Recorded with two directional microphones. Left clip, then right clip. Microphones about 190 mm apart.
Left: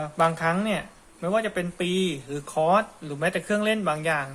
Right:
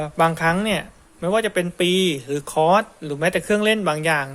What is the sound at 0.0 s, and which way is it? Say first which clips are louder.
Speech: right 4 dB; 45° right (ahead or behind).